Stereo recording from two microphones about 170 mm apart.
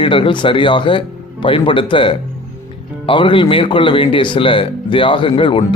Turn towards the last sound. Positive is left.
turn(degrees=30)  # may be behind; listen again after turning